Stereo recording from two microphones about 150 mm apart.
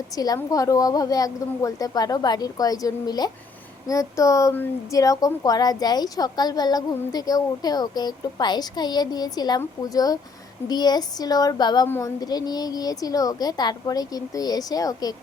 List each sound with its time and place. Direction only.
0.3 s a woman's voice: 25° left (ahead or behind)